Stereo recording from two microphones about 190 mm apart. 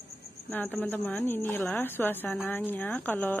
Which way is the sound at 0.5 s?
10° left (ahead or behind).